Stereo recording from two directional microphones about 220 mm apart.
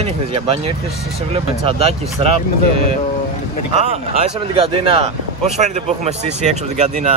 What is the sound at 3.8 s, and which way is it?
Speech, 30° right (ahead or behind).